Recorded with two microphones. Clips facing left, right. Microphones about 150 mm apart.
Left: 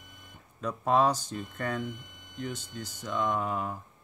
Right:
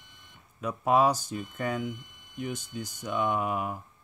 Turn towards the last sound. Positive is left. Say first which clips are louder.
# right 2 dB
turn(degrees=-10)  # may be behind; listen again after turning